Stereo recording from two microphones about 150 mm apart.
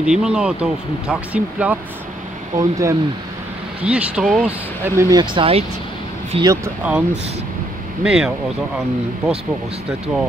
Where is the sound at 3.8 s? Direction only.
5° right (ahead or behind).